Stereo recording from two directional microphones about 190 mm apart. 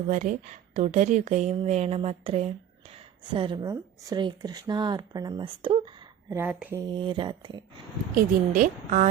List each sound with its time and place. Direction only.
0.1 s a woman's voice: 40° right (ahead or behind)
6.3 s speech: 5° right (ahead or behind)
6.7 s a woman's voice: 20° right (ahead or behind)
8.1 s a woman's voice: 45° right (ahead or behind)